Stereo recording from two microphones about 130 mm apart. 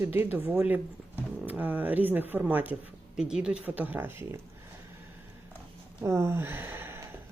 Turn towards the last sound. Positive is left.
turn(degrees=-20)  # may be behind; listen again after turning